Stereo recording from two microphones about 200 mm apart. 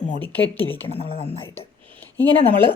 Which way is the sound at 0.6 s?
30° left (ahead or behind).